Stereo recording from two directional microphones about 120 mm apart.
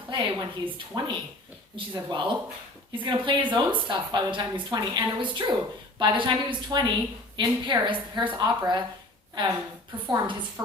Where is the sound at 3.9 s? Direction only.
45° right (ahead or behind).